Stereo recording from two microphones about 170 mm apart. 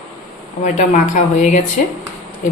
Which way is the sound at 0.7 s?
45° left (ahead or behind).